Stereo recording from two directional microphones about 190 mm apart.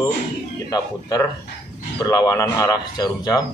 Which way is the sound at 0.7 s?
20° left (ahead or behind).